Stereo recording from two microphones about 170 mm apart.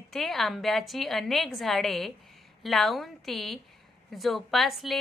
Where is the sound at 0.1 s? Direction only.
Centre (ahead or behind).